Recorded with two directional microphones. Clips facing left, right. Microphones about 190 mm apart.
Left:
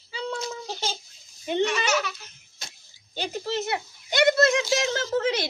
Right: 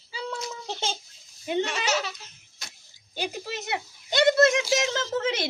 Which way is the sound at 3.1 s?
15° right (ahead or behind).